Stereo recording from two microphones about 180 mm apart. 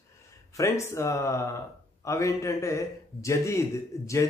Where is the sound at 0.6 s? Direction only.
15° left (ahead or behind).